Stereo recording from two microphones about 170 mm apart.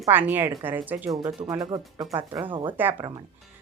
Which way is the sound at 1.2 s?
25° right (ahead or behind).